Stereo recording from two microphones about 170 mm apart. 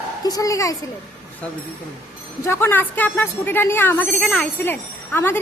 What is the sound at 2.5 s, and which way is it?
Speech, 15° left (ahead or behind).